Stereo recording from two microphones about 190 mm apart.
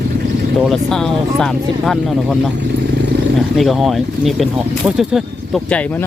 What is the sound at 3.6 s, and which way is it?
Speech, centre (ahead or behind).